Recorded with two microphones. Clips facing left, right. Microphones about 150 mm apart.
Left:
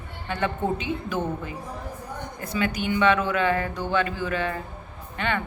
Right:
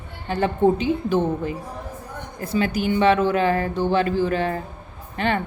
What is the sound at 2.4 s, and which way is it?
Speech, 35° right (ahead or behind).